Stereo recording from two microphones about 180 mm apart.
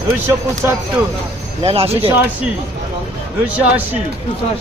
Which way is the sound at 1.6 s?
35° right (ahead or behind).